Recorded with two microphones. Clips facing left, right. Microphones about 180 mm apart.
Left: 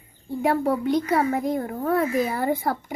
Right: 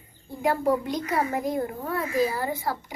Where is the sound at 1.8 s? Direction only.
55° left (ahead or behind).